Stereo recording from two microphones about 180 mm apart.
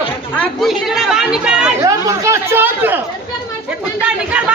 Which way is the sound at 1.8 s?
15° right (ahead or behind).